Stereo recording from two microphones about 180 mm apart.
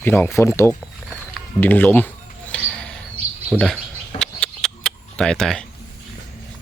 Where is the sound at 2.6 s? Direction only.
Centre (ahead or behind).